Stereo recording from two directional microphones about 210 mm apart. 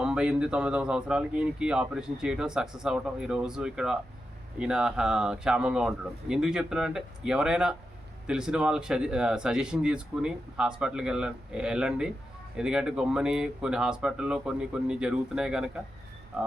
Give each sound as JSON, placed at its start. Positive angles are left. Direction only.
{"t": 0.0, "sound": "speech", "side_deg": -5}